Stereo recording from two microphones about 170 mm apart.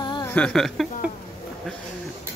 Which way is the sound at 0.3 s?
5° left (ahead or behind).